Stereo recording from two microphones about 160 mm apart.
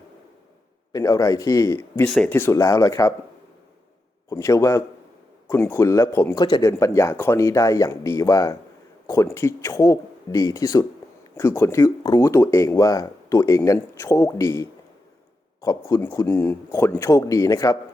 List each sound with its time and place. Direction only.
0.9 s speech: 20° left (ahead or behind)
2.0 s speech: centre (ahead or behind)
2.3 s speech: 15° left (ahead or behind)
4.3 s speech: 20° left (ahead or behind)